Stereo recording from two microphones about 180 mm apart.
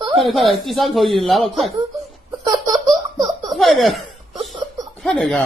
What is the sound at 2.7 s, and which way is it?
Laughter, 30° right (ahead or behind).